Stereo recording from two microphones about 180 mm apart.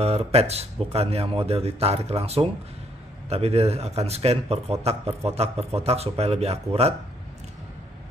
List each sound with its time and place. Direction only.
0.0 s speech: 35° right (ahead or behind)